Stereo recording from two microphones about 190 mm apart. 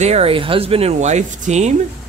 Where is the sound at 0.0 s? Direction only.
30° right (ahead or behind).